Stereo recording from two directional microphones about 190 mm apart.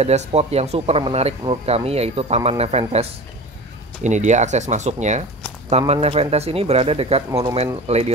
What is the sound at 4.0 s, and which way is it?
Speech, 40° right (ahead or behind).